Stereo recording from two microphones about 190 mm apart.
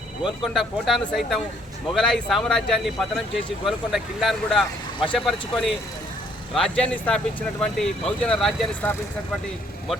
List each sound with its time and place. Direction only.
0.4 s speech: centre (ahead or behind)